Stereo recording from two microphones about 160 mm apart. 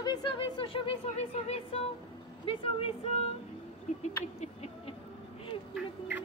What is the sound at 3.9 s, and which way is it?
Owl, 45° left (ahead or behind).